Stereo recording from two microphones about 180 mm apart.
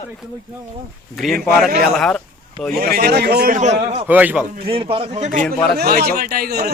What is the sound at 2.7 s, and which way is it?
A man's voice, 55° right (ahead or behind).